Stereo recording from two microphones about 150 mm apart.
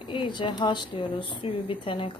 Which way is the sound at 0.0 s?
35° left (ahead or behind).